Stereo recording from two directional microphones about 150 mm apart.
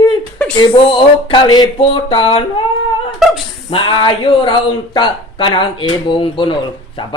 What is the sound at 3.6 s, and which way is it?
Speech, 35° left (ahead or behind).